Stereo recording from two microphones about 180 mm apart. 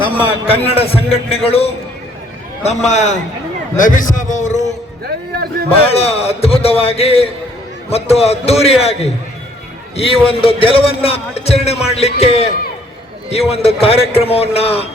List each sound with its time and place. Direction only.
0.3 s a man's voice: 30° left (ahead or behind)
5.0 s speech: 60° right (ahead or behind)
5.7 s speech: 35° left (ahead or behind)